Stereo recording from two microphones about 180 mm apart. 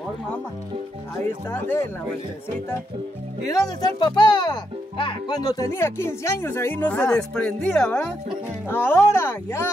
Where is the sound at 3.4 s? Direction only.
20° left (ahead or behind).